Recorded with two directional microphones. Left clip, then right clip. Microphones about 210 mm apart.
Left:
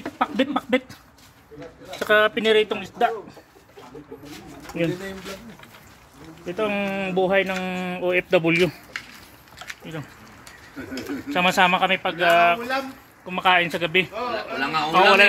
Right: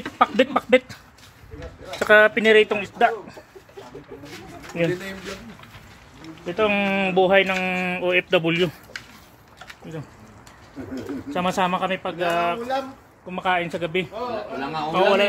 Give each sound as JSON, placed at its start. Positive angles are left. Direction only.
{"t": 0.2, "sound": "speech", "side_deg": -35}
{"t": 2.0, "sound": "speech", "side_deg": -10}
{"t": 4.7, "sound": "speech", "side_deg": 0}
{"t": 6.4, "sound": "speech", "side_deg": -20}
{"t": 7.2, "sound": "speech", "side_deg": -10}
{"t": 8.0, "sound": "speech", "side_deg": 5}
{"t": 9.7, "sound": "a sound", "side_deg": 10}
{"t": 11.2, "sound": "speech", "side_deg": 15}
{"t": 14.6, "sound": "speech", "side_deg": -10}
{"t": 14.9, "sound": "speech", "side_deg": 15}